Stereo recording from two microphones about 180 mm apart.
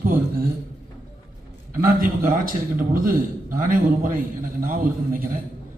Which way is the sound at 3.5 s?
50° right (ahead or behind).